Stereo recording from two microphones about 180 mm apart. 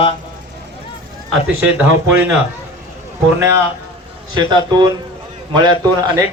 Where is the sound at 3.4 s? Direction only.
15° right (ahead or behind).